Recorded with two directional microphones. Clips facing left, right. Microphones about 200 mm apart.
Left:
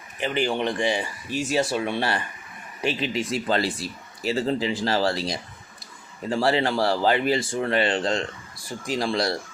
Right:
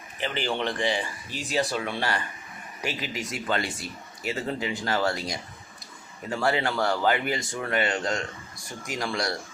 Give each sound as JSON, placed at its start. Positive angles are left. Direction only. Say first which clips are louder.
{"t": 0.2, "sound": "speech", "louder": "left 4 dB", "side_deg": 15}